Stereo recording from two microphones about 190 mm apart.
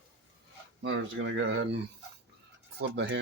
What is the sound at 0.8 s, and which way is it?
Speech, 85° right.